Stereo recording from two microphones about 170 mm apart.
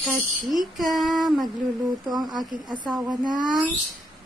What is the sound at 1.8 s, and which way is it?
Speech, 25° right (ahead or behind).